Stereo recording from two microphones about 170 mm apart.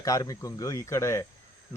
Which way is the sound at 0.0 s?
20° left (ahead or behind).